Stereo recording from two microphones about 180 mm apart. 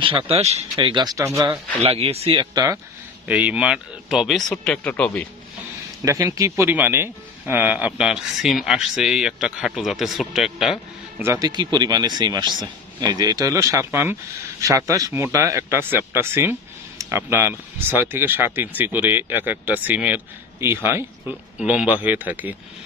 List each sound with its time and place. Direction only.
0.0 s a man's voice: 30° right (ahead or behind)
1.8 s speech: 35° right (ahead or behind)
3.3 s speech: 10° right (ahead or behind); by 5.3 s 10° left (ahead or behind)
6.0 s speech: 15° right (ahead or behind)
11.2 s a man's voice: 20° right (ahead or behind)